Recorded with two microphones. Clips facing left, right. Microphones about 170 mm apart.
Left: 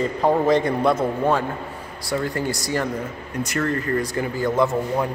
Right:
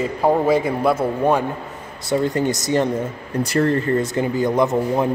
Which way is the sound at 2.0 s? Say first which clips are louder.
Right 5 dB; 20° right (ahead or behind).